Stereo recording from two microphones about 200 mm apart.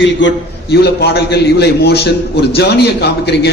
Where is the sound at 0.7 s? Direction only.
55° left (ahead or behind).